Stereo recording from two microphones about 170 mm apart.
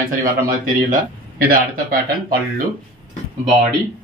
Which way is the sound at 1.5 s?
55° right (ahead or behind).